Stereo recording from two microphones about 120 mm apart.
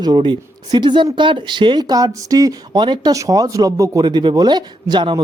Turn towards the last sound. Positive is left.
turn(degrees=-40)  # may be behind; listen again after turning